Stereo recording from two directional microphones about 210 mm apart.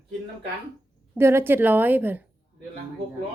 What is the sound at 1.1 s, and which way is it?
A woman's voice, 10° right (ahead or behind).